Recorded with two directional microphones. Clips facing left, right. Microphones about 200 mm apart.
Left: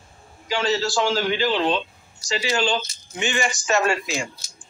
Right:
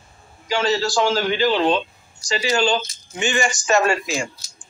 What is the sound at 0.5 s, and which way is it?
A man's voice, 45° right (ahead or behind).